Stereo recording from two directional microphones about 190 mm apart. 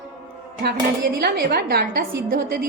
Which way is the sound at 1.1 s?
55° right (ahead or behind).